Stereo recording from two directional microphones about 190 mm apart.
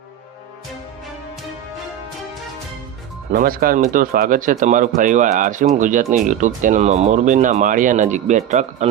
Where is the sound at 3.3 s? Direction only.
50° right (ahead or behind).